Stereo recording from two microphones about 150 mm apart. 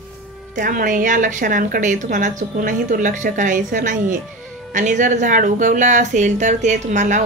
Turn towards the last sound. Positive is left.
turn(degrees=-55)  # may be behind; listen again after turning